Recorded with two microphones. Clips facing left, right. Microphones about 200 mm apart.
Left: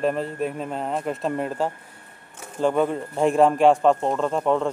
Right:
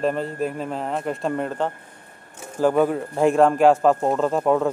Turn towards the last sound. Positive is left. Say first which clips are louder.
# right 2 dB
turn(degrees=-5)  # may be behind; listen again after turning